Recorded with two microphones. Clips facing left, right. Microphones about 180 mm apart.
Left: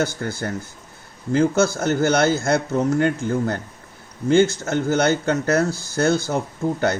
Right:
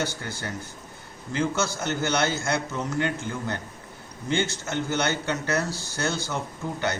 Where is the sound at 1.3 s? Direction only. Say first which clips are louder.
Left 9 dB; 50° left (ahead or behind).